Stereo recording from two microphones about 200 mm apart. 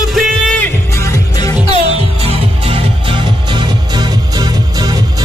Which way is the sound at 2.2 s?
30° right (ahead or behind).